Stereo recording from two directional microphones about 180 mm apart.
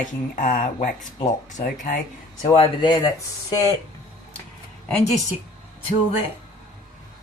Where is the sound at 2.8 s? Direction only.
20° left (ahead or behind).